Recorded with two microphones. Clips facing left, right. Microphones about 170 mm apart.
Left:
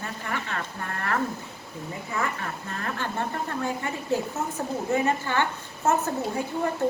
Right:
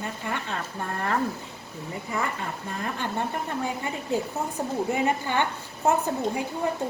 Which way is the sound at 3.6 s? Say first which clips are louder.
Left 1 dB; 15° right (ahead or behind).